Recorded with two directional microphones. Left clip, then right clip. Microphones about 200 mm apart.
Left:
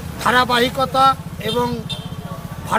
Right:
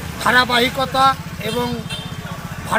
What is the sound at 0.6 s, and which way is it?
Speech, centre (ahead or behind).